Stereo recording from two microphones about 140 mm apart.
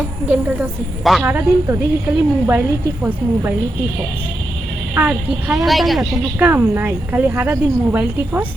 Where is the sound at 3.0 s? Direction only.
10° right (ahead or behind).